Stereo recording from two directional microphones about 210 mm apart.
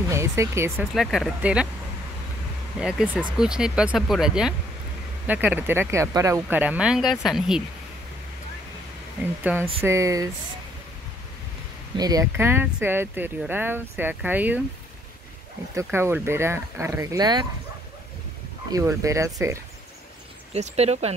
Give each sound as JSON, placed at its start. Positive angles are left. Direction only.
{"t": 0.1, "sound": "speech", "side_deg": -15}
{"t": 0.9, "sound": "speech", "side_deg": 0}
{"t": 2.8, "sound": "speech", "side_deg": -5}
{"t": 9.2, "sound": "speech", "side_deg": -10}
{"t": 12.0, "sound": "speech", "side_deg": -15}
{"t": 15.7, "sound": "speech", "side_deg": -15}
{"t": 18.7, "sound": "speech", "side_deg": -15}
{"t": 20.5, "sound": "speech", "side_deg": -30}